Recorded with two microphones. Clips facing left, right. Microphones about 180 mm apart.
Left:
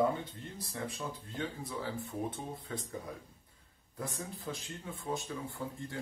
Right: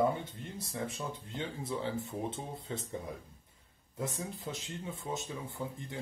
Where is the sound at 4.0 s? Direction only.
20° right (ahead or behind).